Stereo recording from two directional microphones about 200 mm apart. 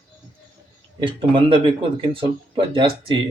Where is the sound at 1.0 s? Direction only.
25° right (ahead or behind).